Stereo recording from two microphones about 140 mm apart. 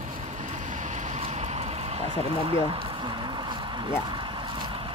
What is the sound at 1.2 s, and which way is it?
Vehicle, 45° right (ahead or behind).